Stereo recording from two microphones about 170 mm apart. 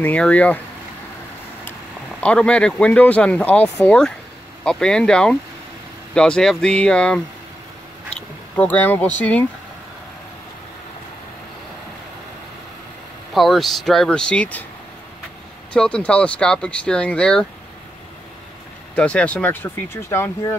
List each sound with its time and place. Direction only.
0.0 s speech: 10° left (ahead or behind)
2.1 s speech: 5° left (ahead or behind)
8.5 s speech: 10° left (ahead or behind)
13.3 s speech: centre (ahead or behind)
15.7 s speech: 5° left (ahead or behind)
18.9 s speech: 5° left (ahead or behind)